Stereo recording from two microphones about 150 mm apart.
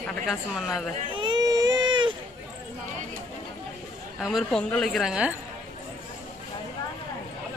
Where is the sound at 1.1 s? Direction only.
30° right (ahead or behind).